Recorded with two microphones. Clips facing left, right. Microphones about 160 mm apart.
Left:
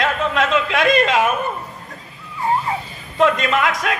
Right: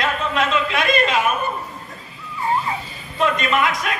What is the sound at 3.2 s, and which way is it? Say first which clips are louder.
Speech: left 3 dB; 85° left.